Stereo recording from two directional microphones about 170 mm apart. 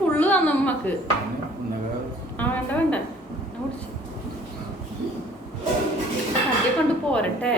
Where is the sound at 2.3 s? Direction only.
10° left (ahead or behind).